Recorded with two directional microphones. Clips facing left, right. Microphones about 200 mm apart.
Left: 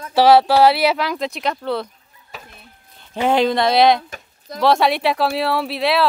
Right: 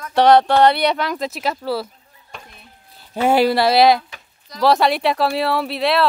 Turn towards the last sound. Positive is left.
turn(degrees=0)  # may be behind; listen again after turning